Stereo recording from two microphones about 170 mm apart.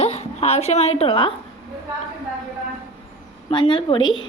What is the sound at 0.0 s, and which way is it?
A woman's voice, 40° left (ahead or behind).